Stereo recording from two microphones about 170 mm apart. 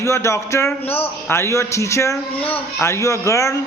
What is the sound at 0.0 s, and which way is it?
A man's voice, 15° left (ahead or behind).